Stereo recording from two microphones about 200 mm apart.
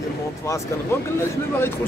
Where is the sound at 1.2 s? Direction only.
10° left (ahead or behind).